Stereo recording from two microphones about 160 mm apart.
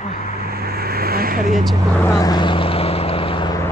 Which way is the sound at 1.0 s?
70° right (ahead or behind).